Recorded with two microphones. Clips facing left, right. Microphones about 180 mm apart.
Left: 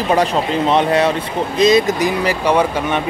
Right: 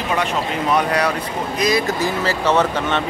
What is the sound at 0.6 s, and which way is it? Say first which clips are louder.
Speech: left 4 dB; 25° left (ahead or behind).